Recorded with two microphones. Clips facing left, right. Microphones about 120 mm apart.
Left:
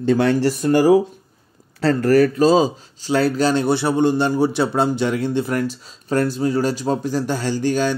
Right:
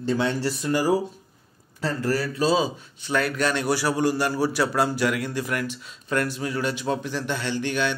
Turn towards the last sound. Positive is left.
turn(degrees=35)  # may be behind; listen again after turning